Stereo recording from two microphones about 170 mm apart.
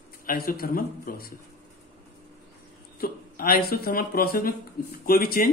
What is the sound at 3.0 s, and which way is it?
Speech, 60° left (ahead or behind).